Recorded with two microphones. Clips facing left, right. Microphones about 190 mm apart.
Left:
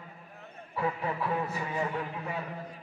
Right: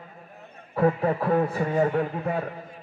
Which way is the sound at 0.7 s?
50° right (ahead or behind).